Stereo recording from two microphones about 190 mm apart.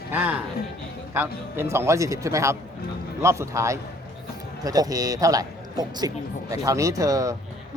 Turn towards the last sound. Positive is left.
turn(degrees=-15)  # may be behind; listen again after turning